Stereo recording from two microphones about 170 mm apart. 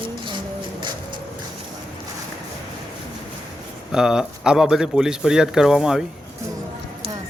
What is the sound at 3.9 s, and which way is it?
Speech, 5° right (ahead or behind).